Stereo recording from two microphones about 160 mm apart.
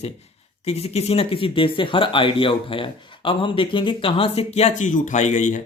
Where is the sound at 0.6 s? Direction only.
40° left (ahead or behind).